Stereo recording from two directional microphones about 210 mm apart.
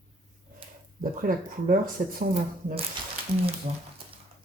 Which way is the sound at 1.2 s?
40° right (ahead or behind).